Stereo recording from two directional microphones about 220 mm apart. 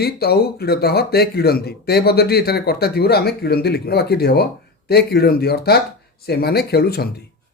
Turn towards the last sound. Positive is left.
turn(degrees=45)  # may be behind; listen again after turning